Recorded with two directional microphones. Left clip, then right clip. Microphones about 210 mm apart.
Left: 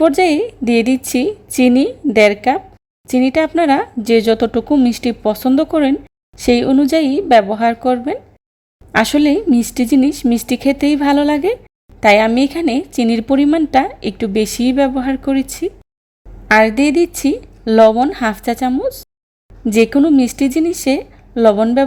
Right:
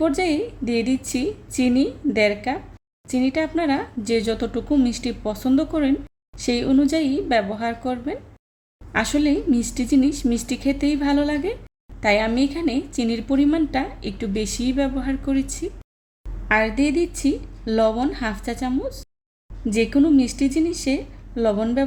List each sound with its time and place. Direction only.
0.0 s speech: 35° left (ahead or behind)